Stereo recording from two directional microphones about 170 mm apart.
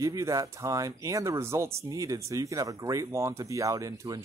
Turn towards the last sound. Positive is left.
turn(degrees=-20)  # may be behind; listen again after turning